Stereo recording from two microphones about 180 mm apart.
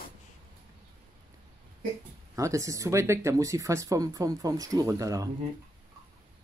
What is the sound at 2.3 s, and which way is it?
Speech, 15° right (ahead or behind).